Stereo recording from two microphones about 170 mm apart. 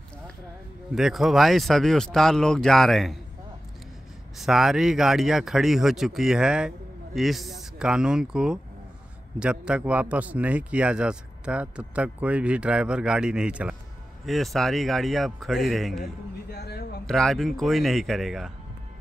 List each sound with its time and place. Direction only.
0.9 s speech: centre (ahead or behind)
4.4 s a man's voice: centre (ahead or behind)
16.4 s a sound: 75° left (ahead or behind)
17.0 s speech: 5° left (ahead or behind)